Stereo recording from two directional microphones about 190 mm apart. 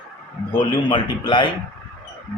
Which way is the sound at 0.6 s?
25° left (ahead or behind).